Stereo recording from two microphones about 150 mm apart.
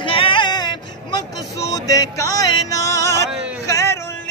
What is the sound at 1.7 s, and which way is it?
Music, 25° left (ahead or behind).